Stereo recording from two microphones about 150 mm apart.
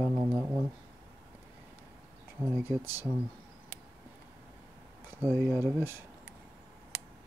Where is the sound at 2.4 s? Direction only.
15° right (ahead or behind).